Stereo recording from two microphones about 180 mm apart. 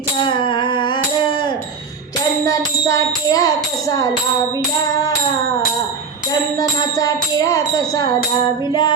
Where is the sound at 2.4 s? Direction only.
20° left (ahead or behind).